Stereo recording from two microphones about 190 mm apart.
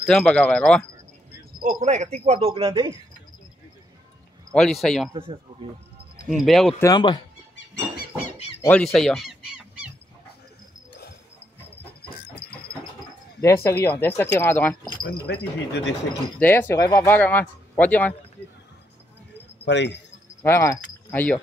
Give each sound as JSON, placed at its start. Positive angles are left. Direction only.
{"t": 0.0, "sound": "speech", "side_deg": 5}
{"t": 1.6, "sound": "speech", "side_deg": -40}
{"t": 4.5, "sound": "speech", "side_deg": 5}
{"t": 5.1, "sound": "speech", "side_deg": -25}
{"t": 6.2, "sound": "speech", "side_deg": 0}
{"t": 6.8, "sound": "speech", "side_deg": 20}
{"t": 7.5, "sound": "a sound", "side_deg": 55}
{"t": 8.6, "sound": "honk", "side_deg": 5}
{"t": 12.4, "sound": "a sound", "side_deg": 60}
{"t": 13.4, "sound": "speech", "side_deg": 15}
{"t": 15.0, "sound": "speech", "side_deg": 65}
{"t": 16.3, "sound": "speech", "side_deg": 10}
{"t": 19.6, "sound": "speech", "side_deg": 65}
{"t": 20.4, "sound": "speech", "side_deg": 15}